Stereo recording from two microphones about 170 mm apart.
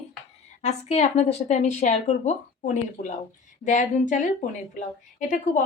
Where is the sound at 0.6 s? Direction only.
40° left (ahead or behind).